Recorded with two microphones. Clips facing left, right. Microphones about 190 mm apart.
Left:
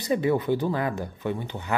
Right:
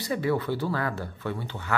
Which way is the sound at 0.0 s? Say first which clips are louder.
Left 3 dB; 20° left (ahead or behind).